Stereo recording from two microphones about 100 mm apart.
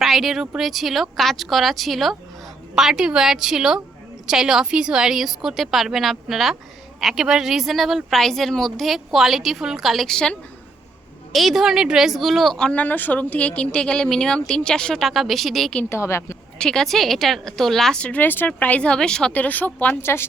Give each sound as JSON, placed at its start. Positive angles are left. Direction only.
{"t": 0.0, "sound": "a woman's voice", "side_deg": 0}
{"t": 15.9, "sound": "a woman's voice", "side_deg": 25}
{"t": 16.6, "sound": "a woman's voice", "side_deg": 5}